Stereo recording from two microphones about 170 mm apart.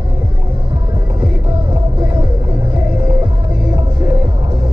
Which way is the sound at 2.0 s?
10° right (ahead or behind).